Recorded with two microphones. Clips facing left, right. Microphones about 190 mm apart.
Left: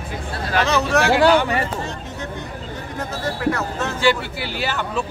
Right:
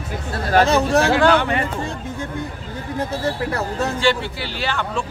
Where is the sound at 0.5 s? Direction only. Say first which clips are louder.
Right 4 dB; 35° right (ahead or behind).